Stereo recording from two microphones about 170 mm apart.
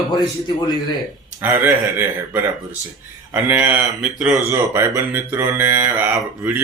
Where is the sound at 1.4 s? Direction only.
10° right (ahead or behind).